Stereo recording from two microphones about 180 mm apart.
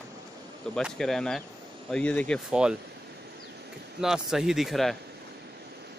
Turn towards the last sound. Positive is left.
turn(degrees=0)  # may be behind; listen again after turning